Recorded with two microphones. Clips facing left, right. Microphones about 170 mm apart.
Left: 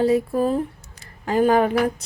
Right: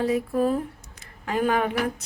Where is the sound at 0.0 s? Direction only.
30° left (ahead or behind).